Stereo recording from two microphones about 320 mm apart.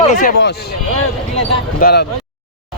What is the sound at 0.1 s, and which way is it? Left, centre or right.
Speech, left.